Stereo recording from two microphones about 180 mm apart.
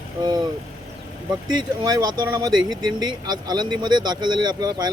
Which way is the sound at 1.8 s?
20° right (ahead or behind).